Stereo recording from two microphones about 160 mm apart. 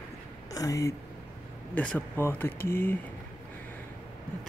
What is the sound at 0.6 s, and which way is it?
Speech, 20° left (ahead or behind).